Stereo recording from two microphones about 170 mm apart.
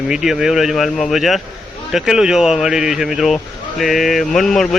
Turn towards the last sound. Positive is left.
turn(degrees=0)  # may be behind; listen again after turning